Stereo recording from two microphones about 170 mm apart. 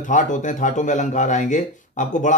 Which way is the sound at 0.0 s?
50° left (ahead or behind).